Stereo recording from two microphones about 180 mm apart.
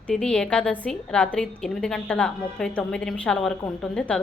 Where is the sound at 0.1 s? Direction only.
5° left (ahead or behind).